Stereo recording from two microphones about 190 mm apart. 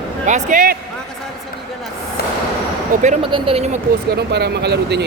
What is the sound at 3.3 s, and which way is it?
Speech, 30° right (ahead or behind).